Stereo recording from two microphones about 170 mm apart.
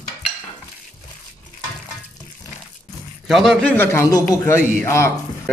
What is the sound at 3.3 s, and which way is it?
A man's voice, centre (ahead or behind).